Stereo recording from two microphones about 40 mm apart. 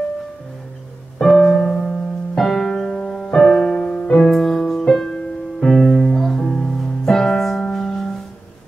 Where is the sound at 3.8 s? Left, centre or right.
Left.